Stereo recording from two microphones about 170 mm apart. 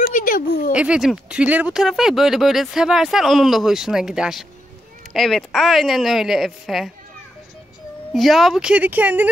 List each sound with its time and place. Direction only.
0.1 s a sound: 55° left (ahead or behind)
0.7 s speech: 5° right (ahead or behind)
8.1 s speech: centre (ahead or behind)